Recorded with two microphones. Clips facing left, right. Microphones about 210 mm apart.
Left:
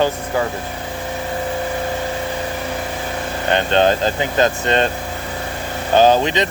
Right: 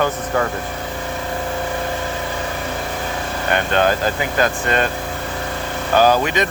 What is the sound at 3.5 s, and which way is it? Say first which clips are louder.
Speech: left 2 dB; 25° left (ahead or behind).